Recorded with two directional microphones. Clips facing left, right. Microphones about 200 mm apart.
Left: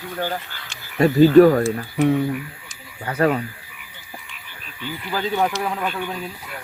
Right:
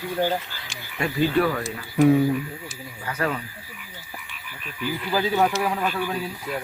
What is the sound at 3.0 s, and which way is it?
Speech, 35° left (ahead or behind).